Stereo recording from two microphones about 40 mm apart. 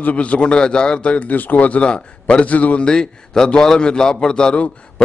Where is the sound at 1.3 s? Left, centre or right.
Left.